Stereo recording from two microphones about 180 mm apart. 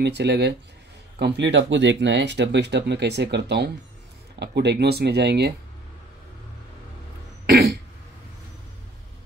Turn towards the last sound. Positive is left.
turn(degrees=-60)  # may be behind; listen again after turning